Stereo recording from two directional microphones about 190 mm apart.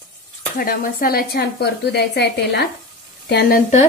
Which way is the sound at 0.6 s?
50° left (ahead or behind).